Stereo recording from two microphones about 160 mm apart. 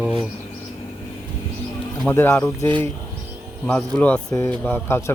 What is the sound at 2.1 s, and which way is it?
Speech, 10° left (ahead or behind).